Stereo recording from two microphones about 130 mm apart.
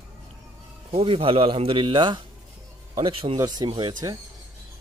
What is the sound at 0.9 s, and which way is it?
A man's voice, 45° right (ahead or behind).